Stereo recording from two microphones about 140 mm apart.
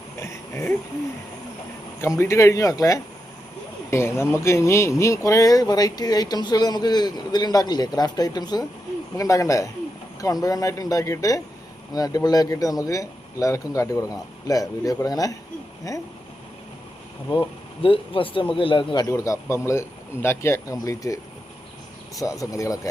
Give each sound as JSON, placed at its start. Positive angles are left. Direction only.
{"t": 0.2, "sound": "a sound", "side_deg": 20}
{"t": 2.0, "sound": "speech", "side_deg": 20}
{"t": 17.3, "sound": "speech", "side_deg": 40}
{"t": 19.0, "sound": "speech", "side_deg": 25}
{"t": 22.2, "sound": "speech", "side_deg": 25}